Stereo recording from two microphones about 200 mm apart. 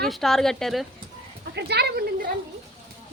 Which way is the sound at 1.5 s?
55° right (ahead or behind).